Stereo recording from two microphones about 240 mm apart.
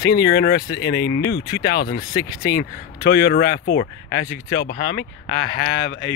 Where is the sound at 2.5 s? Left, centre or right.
Left.